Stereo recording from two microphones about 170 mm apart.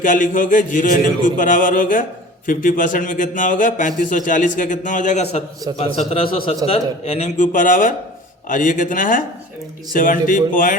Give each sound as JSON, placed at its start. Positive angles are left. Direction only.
{"t": 0.0, "sound": "a man's voice", "side_deg": 50}